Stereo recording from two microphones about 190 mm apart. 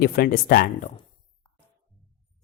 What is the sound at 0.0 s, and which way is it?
Speech, 50° left (ahead or behind).